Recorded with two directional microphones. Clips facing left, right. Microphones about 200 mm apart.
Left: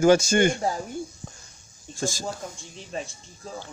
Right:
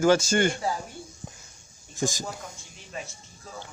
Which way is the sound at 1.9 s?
15° right (ahead or behind).